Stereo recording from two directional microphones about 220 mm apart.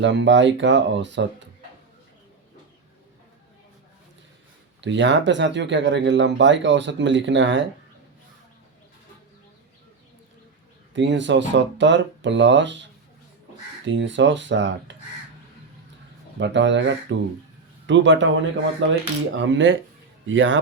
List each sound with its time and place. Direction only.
0.0 s speech: 55° right (ahead or behind)
4.8 s speech: 55° right (ahead or behind)
10.9 s speech: 55° right (ahead or behind)
13.8 s speech: 55° right (ahead or behind)
16.4 s speech: 55° right (ahead or behind)